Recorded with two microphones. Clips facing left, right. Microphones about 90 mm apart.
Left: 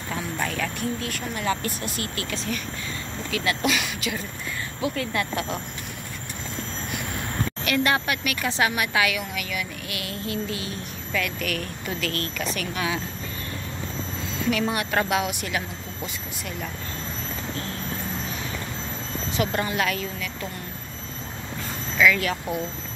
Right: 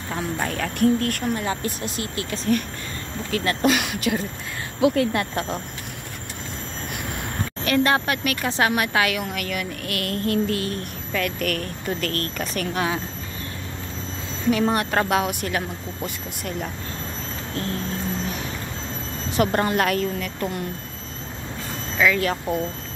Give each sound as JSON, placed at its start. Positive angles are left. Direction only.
{"t": 0.1, "sound": "a woman's voice", "side_deg": -30}
{"t": 0.7, "sound": "speech", "side_deg": -60}
{"t": 1.8, "sound": "speech", "side_deg": 45}
{"t": 3.3, "sound": "speech", "side_deg": -45}
{"t": 7.6, "sound": "speech", "side_deg": -35}
{"t": 11.1, "sound": "speech", "side_deg": -45}
{"t": 14.5, "sound": "speech", "side_deg": -40}
{"t": 19.3, "sound": "speech", "side_deg": -55}
{"t": 21.9, "sound": "speech", "side_deg": -30}